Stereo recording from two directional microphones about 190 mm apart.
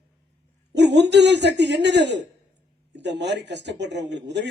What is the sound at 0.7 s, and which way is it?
Speech, 60° right (ahead or behind).